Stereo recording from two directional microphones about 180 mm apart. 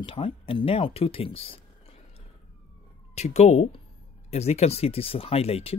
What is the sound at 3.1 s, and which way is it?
Speech, 40° left (ahead or behind).